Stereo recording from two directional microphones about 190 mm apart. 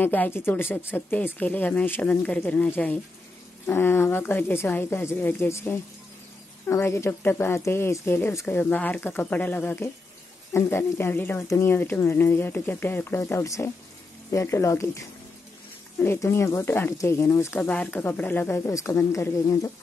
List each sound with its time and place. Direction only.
0.0 s speech: 10° left (ahead or behind)